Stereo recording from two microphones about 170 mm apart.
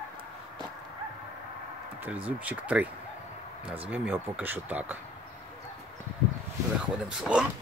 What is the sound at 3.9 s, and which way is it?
Speech, 10° right (ahead or behind).